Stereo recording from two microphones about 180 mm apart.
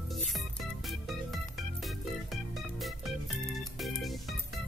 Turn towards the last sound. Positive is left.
turn(degrees=0)  # may be behind; listen again after turning